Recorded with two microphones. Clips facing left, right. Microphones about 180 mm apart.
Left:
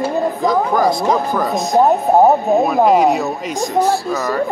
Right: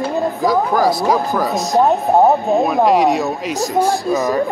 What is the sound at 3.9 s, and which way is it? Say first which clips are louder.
Speech: right 1 dB; 15° right (ahead or behind).